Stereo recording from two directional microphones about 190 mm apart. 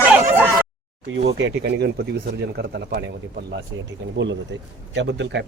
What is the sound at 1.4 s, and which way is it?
Speech, 60° right (ahead or behind).